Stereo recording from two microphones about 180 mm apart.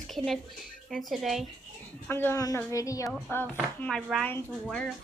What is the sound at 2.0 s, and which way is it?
A woman's voice, 15° left (ahead or behind).